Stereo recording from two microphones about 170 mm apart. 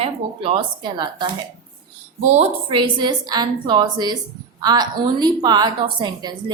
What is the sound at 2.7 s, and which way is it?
A woman's voice, 25° right (ahead or behind).